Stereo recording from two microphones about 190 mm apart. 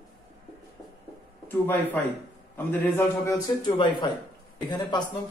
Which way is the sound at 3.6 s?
25° left (ahead or behind).